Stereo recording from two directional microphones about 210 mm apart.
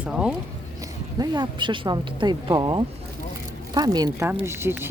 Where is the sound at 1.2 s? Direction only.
20° right (ahead or behind).